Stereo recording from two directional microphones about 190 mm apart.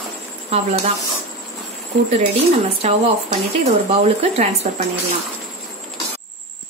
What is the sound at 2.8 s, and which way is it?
Speech, 30° right (ahead or behind).